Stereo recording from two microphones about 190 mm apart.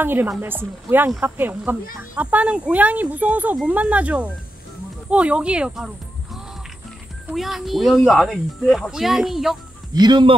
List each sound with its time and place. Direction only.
0.0 s speech: 10° right (ahead or behind)
7.2 s speech: centre (ahead or behind)
9.9 s speech: 25° right (ahead or behind)